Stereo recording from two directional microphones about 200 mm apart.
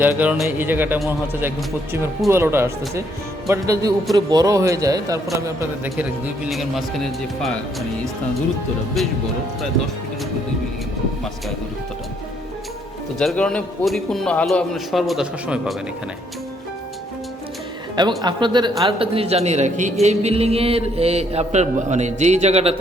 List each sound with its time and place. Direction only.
0.2 s a man's voice: 5° right (ahead or behind)
9.0 s a man's voice: centre (ahead or behind)
13.1 s a man's voice: 5° left (ahead or behind)
18.2 s a man's voice: 20° right (ahead or behind)